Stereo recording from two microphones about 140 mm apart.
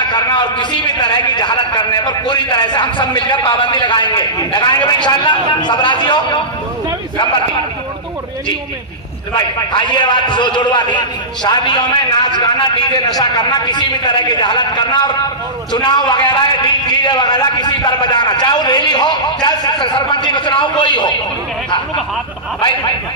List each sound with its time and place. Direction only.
0.0 s a man's voice: 35° left (ahead or behind)
9.3 s a man's voice: 35° left (ahead or behind)